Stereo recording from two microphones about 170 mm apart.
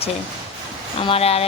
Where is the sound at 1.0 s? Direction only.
35° left (ahead or behind).